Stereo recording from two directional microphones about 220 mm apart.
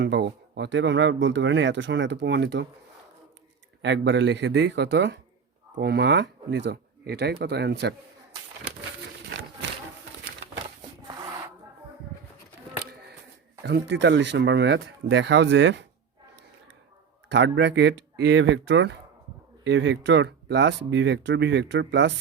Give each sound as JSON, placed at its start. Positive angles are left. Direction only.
{"t": 0.0, "sound": "speech", "side_deg": -50}
{"t": 3.8, "sound": "speech", "side_deg": -55}
{"t": 13.6, "sound": "speech", "side_deg": -50}
{"t": 17.2, "sound": "speech", "side_deg": -55}